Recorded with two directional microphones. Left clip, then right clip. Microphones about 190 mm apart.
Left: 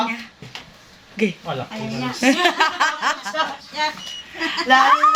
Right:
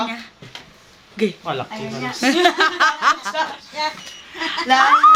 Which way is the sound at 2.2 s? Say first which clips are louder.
Right 1 dB; 15° right (ahead or behind).